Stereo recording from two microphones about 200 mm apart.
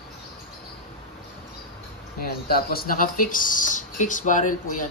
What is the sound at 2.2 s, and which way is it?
Speech, 50° left (ahead or behind).